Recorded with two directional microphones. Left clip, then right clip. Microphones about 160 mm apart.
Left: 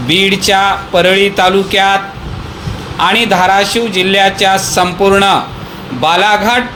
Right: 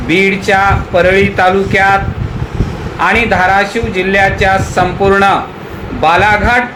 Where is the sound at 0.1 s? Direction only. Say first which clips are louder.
Even; 45° left (ahead or behind).